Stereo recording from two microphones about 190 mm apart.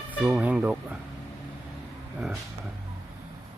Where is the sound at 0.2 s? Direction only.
5° right (ahead or behind).